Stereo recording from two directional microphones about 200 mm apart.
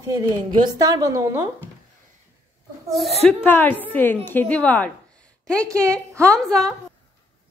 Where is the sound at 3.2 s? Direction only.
10° left (ahead or behind).